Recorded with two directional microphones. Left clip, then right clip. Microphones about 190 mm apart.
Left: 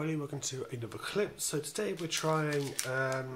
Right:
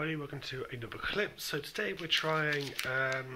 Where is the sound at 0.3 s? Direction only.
15° left (ahead or behind).